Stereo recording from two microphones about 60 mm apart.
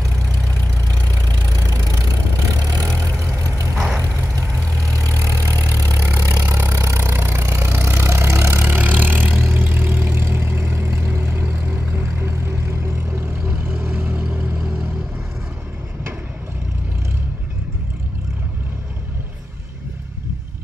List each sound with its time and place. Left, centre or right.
2.6 s vehicle: right
3.7 s vehicle: centre
4.9 s vehicle: right
5.6 s vehicle: right
8.5 s vehicle: right
10.1 s vehicle: right
11.4 s vehicle: right